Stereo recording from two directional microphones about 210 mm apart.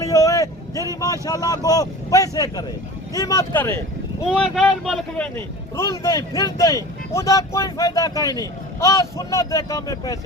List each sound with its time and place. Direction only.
0.0 s a sound: 15° left (ahead or behind)
0.9 s a man's voice: 15° left (ahead or behind)
4.3 s a man's voice: 5° right (ahead or behind); by 10.2 s 15° left (ahead or behind)